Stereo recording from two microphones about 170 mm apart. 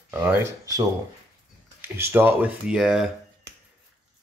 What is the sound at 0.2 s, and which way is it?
Speech, 15° right (ahead or behind).